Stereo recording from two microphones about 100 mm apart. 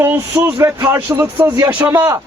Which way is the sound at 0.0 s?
20° right (ahead or behind).